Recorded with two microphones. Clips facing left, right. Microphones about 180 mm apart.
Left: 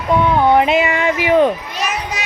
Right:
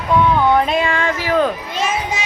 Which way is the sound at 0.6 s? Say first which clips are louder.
Left 3 dB; 20° left (ahead or behind).